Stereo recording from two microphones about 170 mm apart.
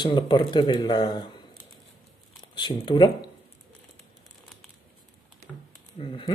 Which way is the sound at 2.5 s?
30° left (ahead or behind).